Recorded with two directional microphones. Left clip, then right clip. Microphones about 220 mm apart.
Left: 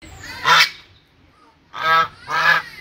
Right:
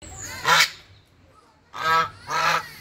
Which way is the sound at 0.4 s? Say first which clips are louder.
Left 5 dB; 5° right (ahead or behind).